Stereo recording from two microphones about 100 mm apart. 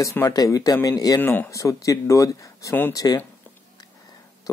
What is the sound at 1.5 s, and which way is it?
Speech, 35° left (ahead or behind).